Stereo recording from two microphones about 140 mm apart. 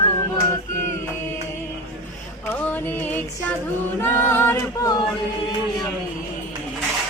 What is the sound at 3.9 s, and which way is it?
A capella, 15° left (ahead or behind).